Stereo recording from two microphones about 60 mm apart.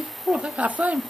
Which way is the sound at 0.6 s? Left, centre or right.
Right.